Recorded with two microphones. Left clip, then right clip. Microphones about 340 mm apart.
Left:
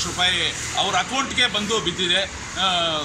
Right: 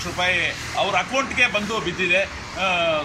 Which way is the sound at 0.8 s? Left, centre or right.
Centre.